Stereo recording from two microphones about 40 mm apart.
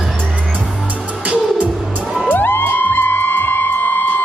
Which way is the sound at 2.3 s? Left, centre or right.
Left.